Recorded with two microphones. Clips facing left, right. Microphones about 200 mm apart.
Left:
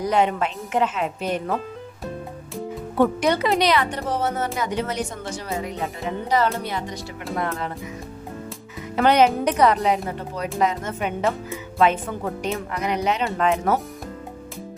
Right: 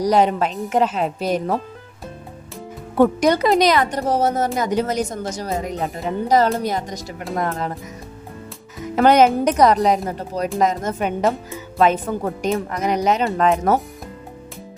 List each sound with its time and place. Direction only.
0.0 s speech: 35° right (ahead or behind)
3.0 s speech: 40° right (ahead or behind)
9.0 s speech: 45° right (ahead or behind)